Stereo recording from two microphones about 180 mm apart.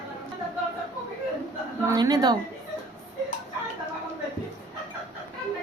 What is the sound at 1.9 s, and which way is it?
Speech, 20° right (ahead or behind).